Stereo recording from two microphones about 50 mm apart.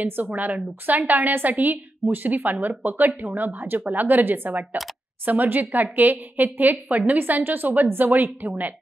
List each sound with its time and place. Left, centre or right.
0.0 s a woman's voice: right